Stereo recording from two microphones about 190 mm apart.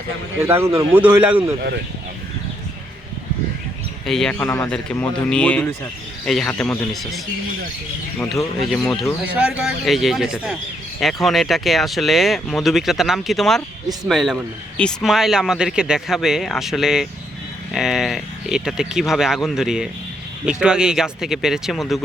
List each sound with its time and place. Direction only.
0.4 s speech: 15° right (ahead or behind)
4.0 s speech: centre (ahead or behind)
4.4 s speech: 15° left (ahead or behind)
4.7 s speech: 5° left (ahead or behind)
8.3 s speech: centre (ahead or behind)